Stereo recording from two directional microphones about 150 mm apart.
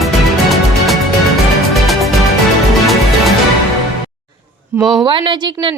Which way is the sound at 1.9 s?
Centre (ahead or behind).